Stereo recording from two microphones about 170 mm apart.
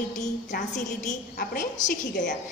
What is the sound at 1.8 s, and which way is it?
Speech, 55° left (ahead or behind).